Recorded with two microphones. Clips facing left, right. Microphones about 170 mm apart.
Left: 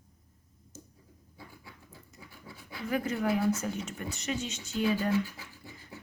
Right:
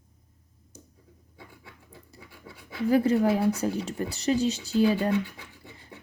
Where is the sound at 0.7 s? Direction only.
10° right (ahead or behind).